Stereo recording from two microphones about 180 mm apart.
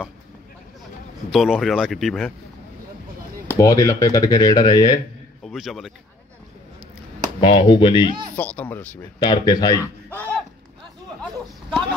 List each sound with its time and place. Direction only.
1.3 s speech: centre (ahead or behind)
3.5 s speech: 20° left (ahead or behind)
5.4 s speech: centre (ahead or behind)
7.3 s speech: 30° left (ahead or behind)
8.4 s speech: 10° left (ahead or behind)
9.2 s speech: 25° left (ahead or behind)
10.0 s a sound: 10° left (ahead or behind)